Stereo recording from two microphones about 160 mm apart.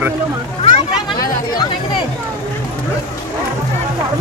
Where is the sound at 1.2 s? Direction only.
25° left (ahead or behind).